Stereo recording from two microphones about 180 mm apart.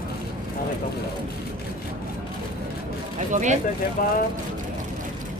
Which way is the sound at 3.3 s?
40° right (ahead or behind).